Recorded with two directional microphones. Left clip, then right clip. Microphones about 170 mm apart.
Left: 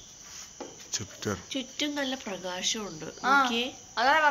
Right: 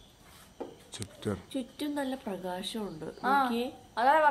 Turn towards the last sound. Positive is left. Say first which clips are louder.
# left 1 dB
turn(degrees=-30)  # may be behind; listen again after turning